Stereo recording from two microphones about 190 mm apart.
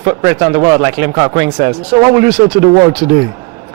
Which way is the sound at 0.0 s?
15° right (ahead or behind).